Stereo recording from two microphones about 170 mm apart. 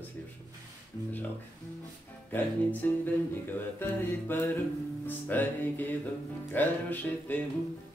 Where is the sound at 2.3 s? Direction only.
10° left (ahead or behind).